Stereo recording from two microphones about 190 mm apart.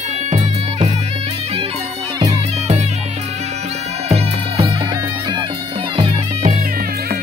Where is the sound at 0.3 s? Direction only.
35° right (ahead or behind).